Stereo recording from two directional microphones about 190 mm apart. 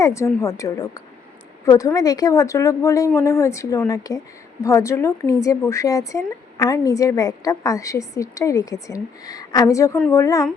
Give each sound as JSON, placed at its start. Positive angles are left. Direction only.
{"t": 0.0, "sound": "a woman's voice", "side_deg": 15}